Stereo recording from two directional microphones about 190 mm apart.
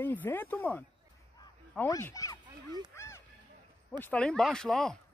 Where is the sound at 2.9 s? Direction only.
15° left (ahead or behind).